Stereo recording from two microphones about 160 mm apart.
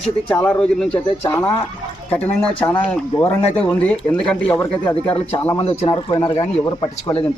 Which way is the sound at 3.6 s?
10° left (ahead or behind).